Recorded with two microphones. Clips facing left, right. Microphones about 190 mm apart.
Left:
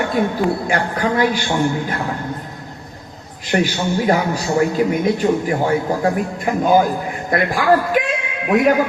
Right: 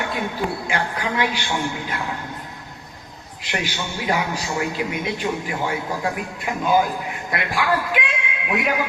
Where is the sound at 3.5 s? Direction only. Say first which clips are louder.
Left 9 dB; 45° left (ahead or behind).